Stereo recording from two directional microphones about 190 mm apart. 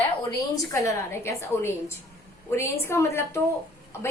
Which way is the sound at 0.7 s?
15° left (ahead or behind).